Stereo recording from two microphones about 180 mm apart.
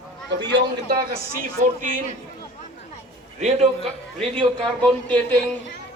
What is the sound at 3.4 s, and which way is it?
Speech, 35° right (ahead or behind).